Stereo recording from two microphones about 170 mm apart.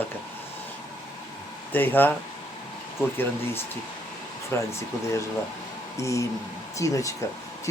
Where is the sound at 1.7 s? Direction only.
10° left (ahead or behind).